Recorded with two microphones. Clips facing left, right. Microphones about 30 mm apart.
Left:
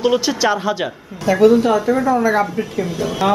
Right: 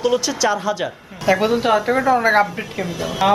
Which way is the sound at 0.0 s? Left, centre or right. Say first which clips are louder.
Left 2 dB; centre.